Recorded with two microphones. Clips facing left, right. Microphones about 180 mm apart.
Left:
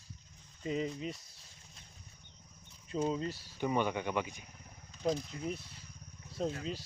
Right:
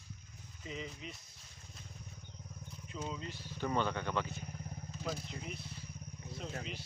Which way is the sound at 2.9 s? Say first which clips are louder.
Left 9 dB; 35° left (ahead or behind).